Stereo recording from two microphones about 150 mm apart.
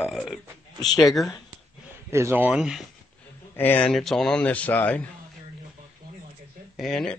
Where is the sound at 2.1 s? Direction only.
20° right (ahead or behind).